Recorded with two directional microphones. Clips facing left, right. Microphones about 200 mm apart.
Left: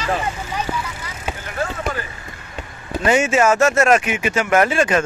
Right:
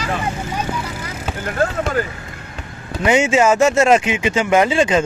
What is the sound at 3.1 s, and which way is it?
Speech, 15° right (ahead or behind).